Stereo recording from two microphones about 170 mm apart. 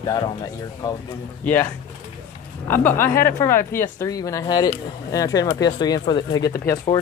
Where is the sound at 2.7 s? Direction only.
10° left (ahead or behind).